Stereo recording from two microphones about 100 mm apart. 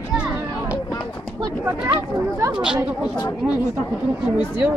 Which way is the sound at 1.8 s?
20° right (ahead or behind).